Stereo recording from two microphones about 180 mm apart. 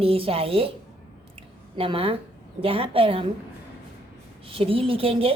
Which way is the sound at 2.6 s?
30° right (ahead or behind).